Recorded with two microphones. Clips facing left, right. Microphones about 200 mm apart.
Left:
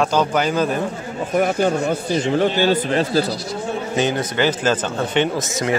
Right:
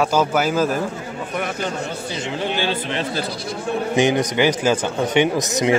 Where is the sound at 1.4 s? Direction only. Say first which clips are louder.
Left 8 dB; 50° left (ahead or behind).